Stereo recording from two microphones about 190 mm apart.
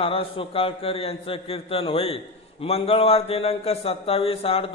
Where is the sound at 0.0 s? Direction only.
30° left (ahead or behind).